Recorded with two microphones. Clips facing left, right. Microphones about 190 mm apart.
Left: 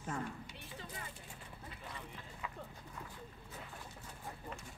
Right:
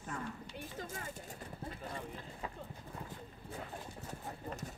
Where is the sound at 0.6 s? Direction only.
45° right (ahead or behind).